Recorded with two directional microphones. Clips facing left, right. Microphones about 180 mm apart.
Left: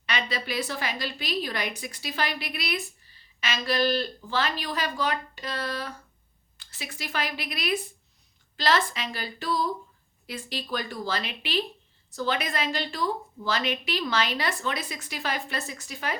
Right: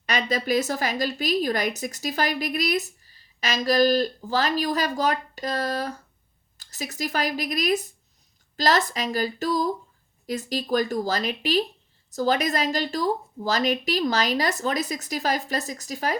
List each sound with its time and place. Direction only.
0.0 s a woman's voice: 40° right (ahead or behind)